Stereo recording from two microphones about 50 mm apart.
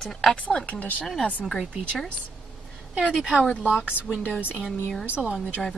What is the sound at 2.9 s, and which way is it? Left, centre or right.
Speech, centre.